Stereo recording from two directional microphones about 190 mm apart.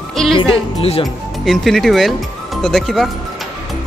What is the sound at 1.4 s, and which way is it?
Speech, centre (ahead or behind).